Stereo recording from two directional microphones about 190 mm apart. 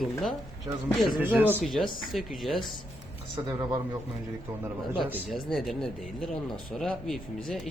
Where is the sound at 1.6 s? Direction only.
Centre (ahead or behind).